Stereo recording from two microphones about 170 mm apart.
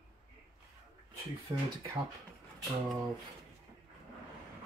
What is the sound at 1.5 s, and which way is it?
Speech, 25° right (ahead or behind).